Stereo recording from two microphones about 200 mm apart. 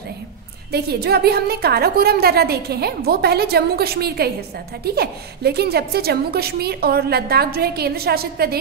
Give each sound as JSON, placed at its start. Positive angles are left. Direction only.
{"t": 0.7, "sound": "a woman's voice", "side_deg": -55}